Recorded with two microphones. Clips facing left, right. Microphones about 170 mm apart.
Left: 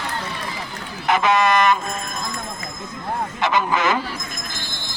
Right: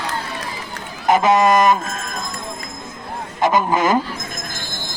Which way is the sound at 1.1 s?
40° right (ahead or behind).